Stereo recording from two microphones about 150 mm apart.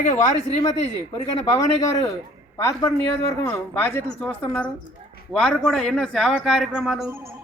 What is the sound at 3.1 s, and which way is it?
A woman's voice, 15° left (ahead or behind).